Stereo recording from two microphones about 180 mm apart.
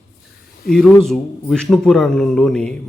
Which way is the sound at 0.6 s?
55° left (ahead or behind).